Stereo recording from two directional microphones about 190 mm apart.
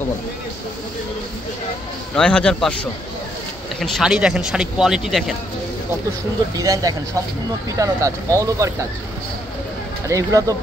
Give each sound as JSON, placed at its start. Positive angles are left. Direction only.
{"t": 2.1, "sound": "speech", "side_deg": 5}
{"t": 6.5, "sound": "speech", "side_deg": -20}
{"t": 10.0, "sound": "speech", "side_deg": -15}